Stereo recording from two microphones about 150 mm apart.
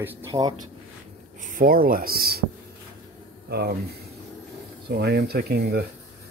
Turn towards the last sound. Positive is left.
turn(degrees=-90)